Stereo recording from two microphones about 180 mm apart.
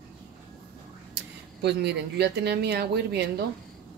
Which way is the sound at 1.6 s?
65° right (ahead or behind).